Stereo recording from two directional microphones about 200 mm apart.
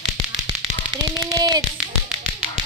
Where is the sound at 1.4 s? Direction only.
20° right (ahead or behind).